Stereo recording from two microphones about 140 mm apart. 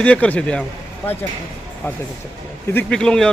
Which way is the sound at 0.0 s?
10° left (ahead or behind).